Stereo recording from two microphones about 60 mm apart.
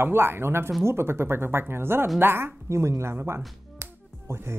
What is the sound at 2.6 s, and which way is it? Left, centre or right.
Speech, right.